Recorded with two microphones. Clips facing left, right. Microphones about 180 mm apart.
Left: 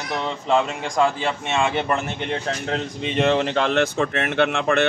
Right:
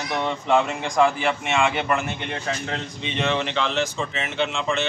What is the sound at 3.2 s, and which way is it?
Speech, 40° left (ahead or behind).